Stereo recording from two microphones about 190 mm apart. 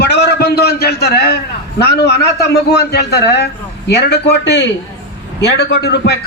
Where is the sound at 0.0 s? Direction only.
60° left (ahead or behind).